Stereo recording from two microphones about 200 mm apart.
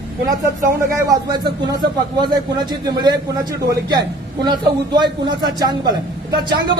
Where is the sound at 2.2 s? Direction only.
20° right (ahead or behind).